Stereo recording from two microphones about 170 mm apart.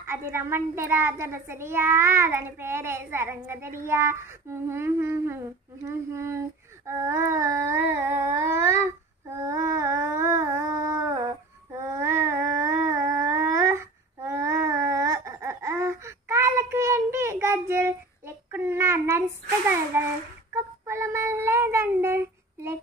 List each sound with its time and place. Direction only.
0.0 s a child's voice: 15° right (ahead or behind)
6.9 s a sound: 15° right (ahead or behind)
19.9 s a child's voice: 15° right (ahead or behind)
20.5 s cat: 15° right (ahead or behind)